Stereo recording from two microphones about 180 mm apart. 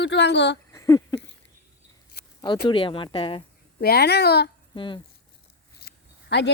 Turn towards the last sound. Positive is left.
turn(degrees=70)  # may be behind; listen again after turning